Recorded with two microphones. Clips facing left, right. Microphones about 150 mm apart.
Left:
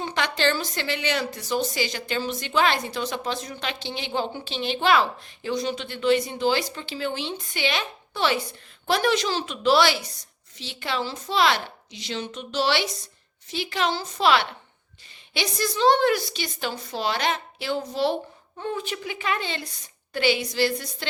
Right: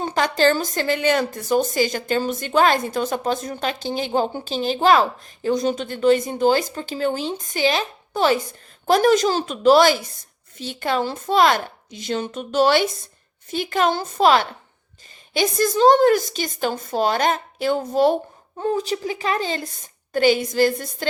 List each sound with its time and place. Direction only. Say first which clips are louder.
0.0 s a woman's voice: right 6 dB; 40° right (ahead or behind)